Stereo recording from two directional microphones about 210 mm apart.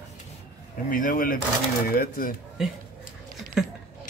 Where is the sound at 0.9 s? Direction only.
40° left (ahead or behind).